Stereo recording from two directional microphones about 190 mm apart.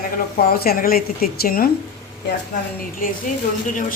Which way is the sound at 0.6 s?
50° left (ahead or behind).